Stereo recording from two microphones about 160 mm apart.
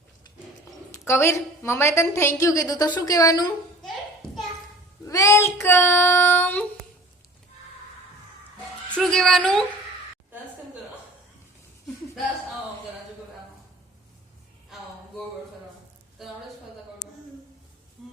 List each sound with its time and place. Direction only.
0.9 s a woman's voice: 15° left (ahead or behind)
5.0 s speech: 20° left (ahead or behind)
5.6 s child singing: 15° left (ahead or behind)
9.0 s a woman's voice: 5° left (ahead or behind)